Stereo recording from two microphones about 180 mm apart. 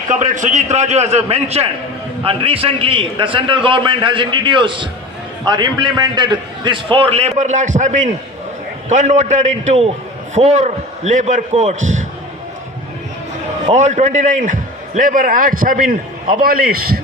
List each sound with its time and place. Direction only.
0.1 s a man's voice: 40° right (ahead or behind)
13.7 s a man's voice: 40° right (ahead or behind); by 17.0 s 55° right (ahead or behind)